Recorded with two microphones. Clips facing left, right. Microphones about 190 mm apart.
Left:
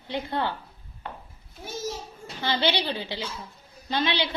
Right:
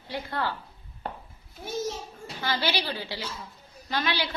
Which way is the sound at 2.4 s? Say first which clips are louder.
Left 3 dB; 25° left (ahead or behind).